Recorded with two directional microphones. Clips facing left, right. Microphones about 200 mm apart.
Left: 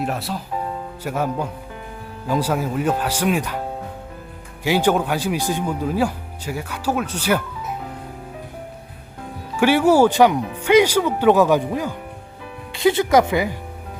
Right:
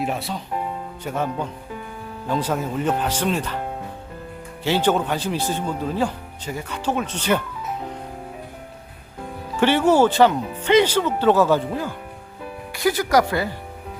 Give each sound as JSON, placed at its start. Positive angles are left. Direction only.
{"t": 0.0, "sound": "speech", "side_deg": 0}
{"t": 4.6, "sound": "speech", "side_deg": 10}
{"t": 9.6, "sound": "speech", "side_deg": 10}